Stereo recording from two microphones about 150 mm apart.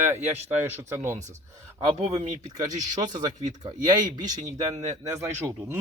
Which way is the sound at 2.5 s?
25° right (ahead or behind).